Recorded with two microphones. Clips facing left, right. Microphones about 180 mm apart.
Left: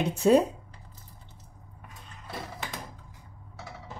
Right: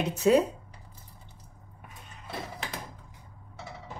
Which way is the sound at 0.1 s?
30° left (ahead or behind).